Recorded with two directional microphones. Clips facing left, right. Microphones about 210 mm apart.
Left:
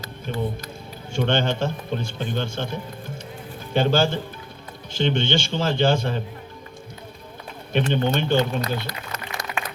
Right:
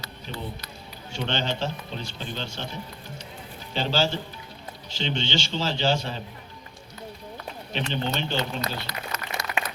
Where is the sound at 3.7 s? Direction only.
50° left (ahead or behind).